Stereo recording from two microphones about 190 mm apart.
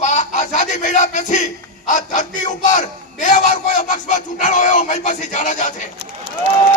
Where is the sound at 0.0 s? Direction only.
40° left (ahead or behind).